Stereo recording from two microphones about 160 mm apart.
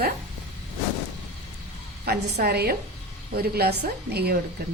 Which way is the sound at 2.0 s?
85° right.